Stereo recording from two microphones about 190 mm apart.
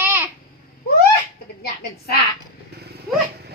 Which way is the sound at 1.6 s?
55° left (ahead or behind).